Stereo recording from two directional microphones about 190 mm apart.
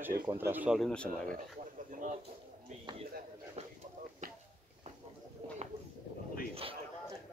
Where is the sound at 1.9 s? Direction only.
40° right (ahead or behind).